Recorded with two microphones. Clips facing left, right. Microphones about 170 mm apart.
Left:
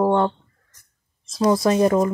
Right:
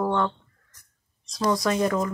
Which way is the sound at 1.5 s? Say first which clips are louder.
Left 6 dB; 25° left (ahead or behind).